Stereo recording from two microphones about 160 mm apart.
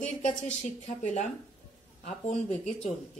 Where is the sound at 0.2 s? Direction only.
50° left (ahead or behind).